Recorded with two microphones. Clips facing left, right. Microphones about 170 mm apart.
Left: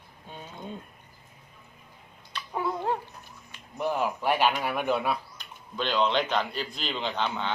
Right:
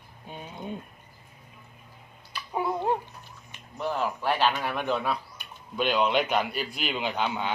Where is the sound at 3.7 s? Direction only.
15° left (ahead or behind).